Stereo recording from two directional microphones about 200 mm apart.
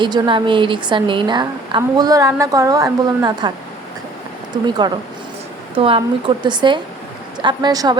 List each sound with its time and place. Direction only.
0.0 s a woman's voice: 25° right (ahead or behind)
4.5 s a woman's voice: 20° right (ahead or behind)